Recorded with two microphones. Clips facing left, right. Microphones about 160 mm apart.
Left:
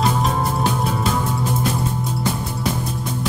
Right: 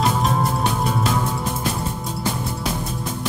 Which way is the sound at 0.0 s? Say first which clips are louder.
Even; centre (ahead or behind).